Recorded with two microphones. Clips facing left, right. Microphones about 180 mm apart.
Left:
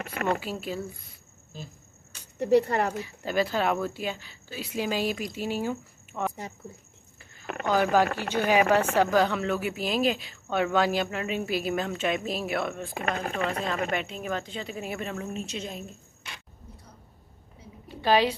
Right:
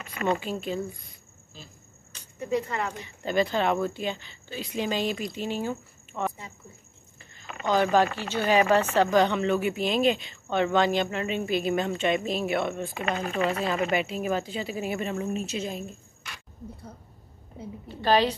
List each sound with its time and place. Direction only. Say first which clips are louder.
0.0 s speech: even; 60° left (ahead or behind)
0.4 s speech: right 2 dB; 5° left (ahead or behind)
2.3 s speech: left 6 dB; 70° left (ahead or behind)
2.9 s speech: even; 5° left (ahead or behind)
7.6 s speech: right 1 dB; 5° left (ahead or behind)
17.8 s a sound: even; 10° left (ahead or behind)